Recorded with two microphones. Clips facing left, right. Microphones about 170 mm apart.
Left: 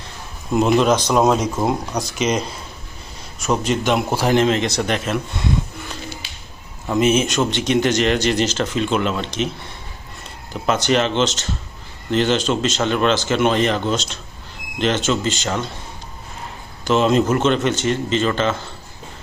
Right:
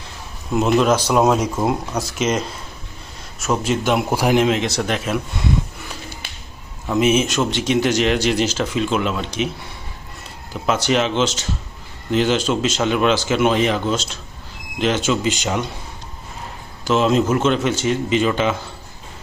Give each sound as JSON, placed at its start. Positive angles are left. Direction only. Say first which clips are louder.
{"t": 0.5, "sound": "speech", "louder": "left 1 dB", "side_deg": 0}
{"t": 6.2, "sound": "a sound", "louder": "right 2 dB", "side_deg": -55}
{"t": 6.8, "sound": "speech", "louder": "even", "side_deg": -5}
{"t": 10.5, "sound": "a man's voice", "louder": "left 1 dB", "side_deg": -5}
{"t": 16.8, "sound": "speech", "louder": "left 1 dB", "side_deg": -5}